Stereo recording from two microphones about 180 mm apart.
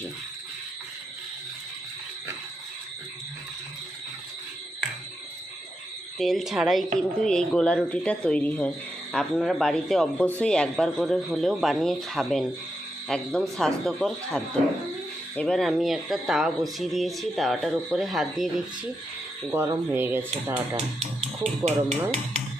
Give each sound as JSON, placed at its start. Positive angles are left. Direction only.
{"t": 6.1, "sound": "speech", "side_deg": 0}
{"t": 19.5, "sound": "speech", "side_deg": -15}
{"t": 20.3, "sound": "speech", "side_deg": -35}